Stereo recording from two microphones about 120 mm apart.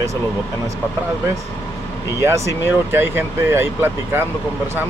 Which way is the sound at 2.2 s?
25° right (ahead or behind).